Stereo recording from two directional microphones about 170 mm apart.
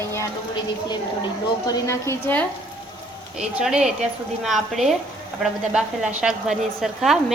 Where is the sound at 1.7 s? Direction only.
20° left (ahead or behind).